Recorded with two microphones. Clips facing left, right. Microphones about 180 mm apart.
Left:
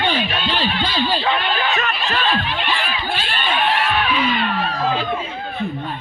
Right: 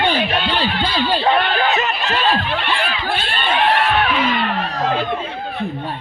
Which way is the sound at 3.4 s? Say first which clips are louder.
Right 3 dB; 60° right (ahead or behind).